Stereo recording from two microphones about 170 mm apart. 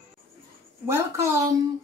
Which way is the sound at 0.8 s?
15° right (ahead or behind).